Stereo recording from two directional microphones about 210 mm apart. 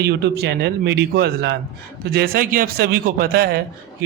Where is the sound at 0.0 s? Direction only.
50° right (ahead or behind).